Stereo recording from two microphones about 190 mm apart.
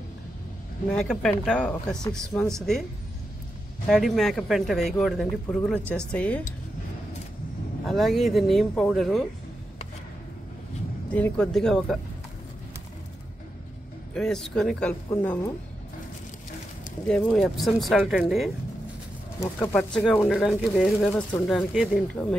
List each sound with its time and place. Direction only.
0.8 s speech: 5° left (ahead or behind)
3.8 s speech: centre (ahead or behind)
7.8 s speech: centre (ahead or behind)
11.1 s speech: 5° left (ahead or behind)
14.1 s speech: centre (ahead or behind)
15.0 s speech: 15° left (ahead or behind)
17.1 s speech: centre (ahead or behind)
19.6 s speech: 5° left (ahead or behind)